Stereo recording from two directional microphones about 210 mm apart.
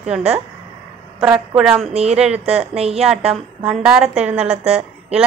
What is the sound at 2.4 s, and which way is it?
Speech, 30° right (ahead or behind).